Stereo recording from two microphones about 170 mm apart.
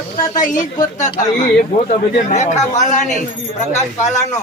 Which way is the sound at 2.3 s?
40° left (ahead or behind).